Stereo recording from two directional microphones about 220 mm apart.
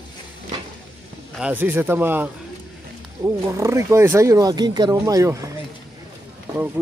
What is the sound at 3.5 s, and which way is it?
Speech, 15° right (ahead or behind).